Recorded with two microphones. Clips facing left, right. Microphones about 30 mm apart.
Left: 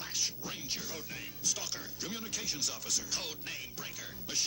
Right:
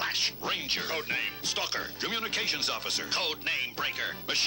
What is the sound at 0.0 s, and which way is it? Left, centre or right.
Speech, right.